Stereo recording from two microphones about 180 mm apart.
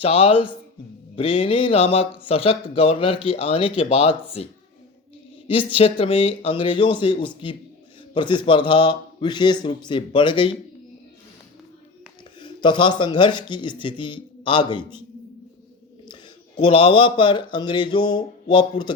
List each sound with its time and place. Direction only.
0.0 s speech: 30° left (ahead or behind)
5.5 s speech: 30° left (ahead or behind)
12.4 s speech: 25° left (ahead or behind)
16.6 s speech: 30° left (ahead or behind)